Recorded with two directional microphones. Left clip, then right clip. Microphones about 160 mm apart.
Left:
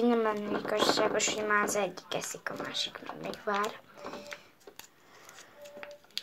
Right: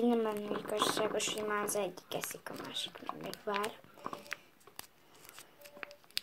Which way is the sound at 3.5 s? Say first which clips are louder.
Left 5 dB; 25° right (ahead or behind).